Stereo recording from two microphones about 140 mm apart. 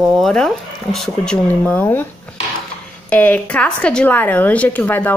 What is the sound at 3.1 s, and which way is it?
Speech, 10° left (ahead or behind).